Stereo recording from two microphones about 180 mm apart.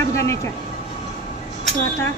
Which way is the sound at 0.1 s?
15° left (ahead or behind).